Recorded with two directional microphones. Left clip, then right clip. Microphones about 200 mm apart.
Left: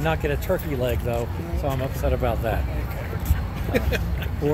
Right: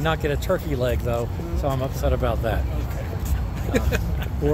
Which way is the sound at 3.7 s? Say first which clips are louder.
Even; 35° right (ahead or behind).